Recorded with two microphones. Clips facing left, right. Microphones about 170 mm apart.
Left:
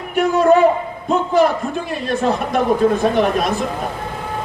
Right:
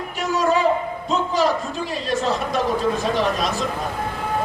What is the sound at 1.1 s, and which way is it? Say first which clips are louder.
A man's voice: left 5 dB; 55° left (ahead or behind).